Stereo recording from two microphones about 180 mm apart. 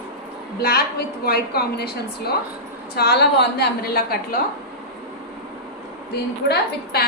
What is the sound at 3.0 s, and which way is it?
A woman's voice, 65° left (ahead or behind).